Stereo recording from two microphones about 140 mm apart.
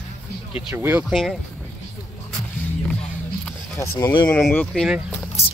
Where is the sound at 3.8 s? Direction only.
20° left (ahead or behind).